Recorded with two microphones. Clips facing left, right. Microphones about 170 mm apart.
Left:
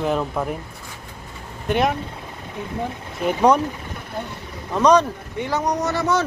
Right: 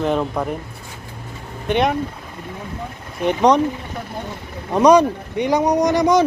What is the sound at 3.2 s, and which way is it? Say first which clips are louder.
Speech: right 2 dB; 5° left (ahead or behind).